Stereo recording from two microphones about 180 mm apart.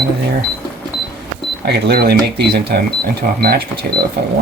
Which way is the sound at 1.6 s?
60° right (ahead or behind).